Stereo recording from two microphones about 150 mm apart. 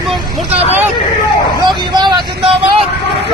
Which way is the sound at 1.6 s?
30° right (ahead or behind).